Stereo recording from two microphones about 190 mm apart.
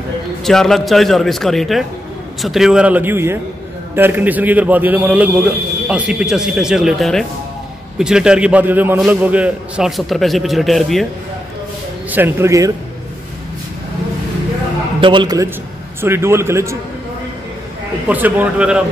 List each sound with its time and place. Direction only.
0.4 s a man's voice: centre (ahead or behind)
12.1 s a man's voice: 10° right (ahead or behind)
15.0 s a man's voice: 25° right (ahead or behind)
18.0 s a man's voice: 10° right (ahead or behind)